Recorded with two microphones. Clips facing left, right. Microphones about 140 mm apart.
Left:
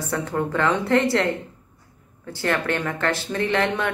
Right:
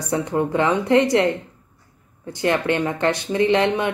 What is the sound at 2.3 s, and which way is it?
Speech, 20° right (ahead or behind).